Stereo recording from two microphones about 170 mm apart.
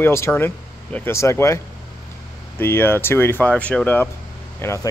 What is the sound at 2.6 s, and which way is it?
Speech, 15° left (ahead or behind).